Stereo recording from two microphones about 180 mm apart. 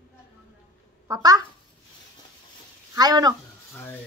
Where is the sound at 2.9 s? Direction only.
20° right (ahead or behind).